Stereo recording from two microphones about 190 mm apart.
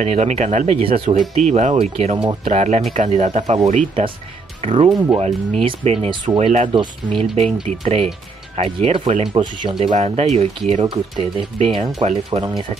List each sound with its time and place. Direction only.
0.0 s speech: 35° right (ahead or behind)
9.8 s speech: 35° right (ahead or behind)
12.3 s speech: 25° right (ahead or behind)